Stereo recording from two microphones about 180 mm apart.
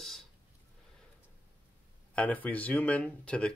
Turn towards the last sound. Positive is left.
turn(degrees=5)  # may be behind; listen again after turning